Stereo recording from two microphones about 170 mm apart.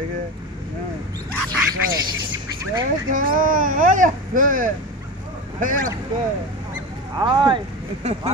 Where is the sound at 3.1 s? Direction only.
55° right (ahead or behind).